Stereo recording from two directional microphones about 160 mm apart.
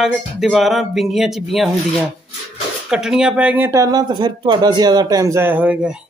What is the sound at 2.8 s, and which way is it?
Speech, 5° right (ahead or behind).